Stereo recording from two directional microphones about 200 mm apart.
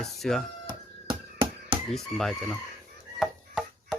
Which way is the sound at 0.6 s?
25° right (ahead or behind).